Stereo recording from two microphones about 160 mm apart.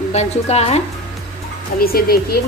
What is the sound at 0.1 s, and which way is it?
Speech, 45° left (ahead or behind).